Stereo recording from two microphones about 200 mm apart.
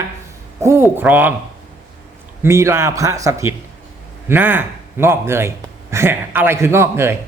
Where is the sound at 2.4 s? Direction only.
15° right (ahead or behind).